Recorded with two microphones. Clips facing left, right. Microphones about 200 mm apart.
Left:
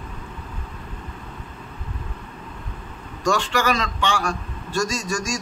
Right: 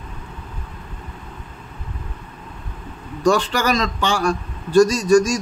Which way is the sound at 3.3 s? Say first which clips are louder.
Right 4 dB; 35° right (ahead or behind).